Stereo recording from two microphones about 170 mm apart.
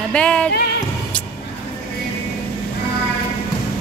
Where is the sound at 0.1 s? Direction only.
5° left (ahead or behind).